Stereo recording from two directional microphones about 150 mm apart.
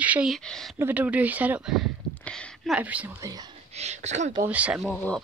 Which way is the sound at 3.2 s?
25° right (ahead or behind).